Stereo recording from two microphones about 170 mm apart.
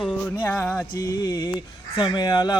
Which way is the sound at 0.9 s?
20° left (ahead or behind).